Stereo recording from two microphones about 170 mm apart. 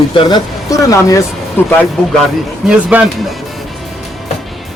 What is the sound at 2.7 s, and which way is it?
Speech, 10° right (ahead or behind).